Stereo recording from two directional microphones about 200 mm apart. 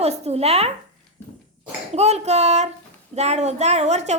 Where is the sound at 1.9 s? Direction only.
35° right (ahead or behind).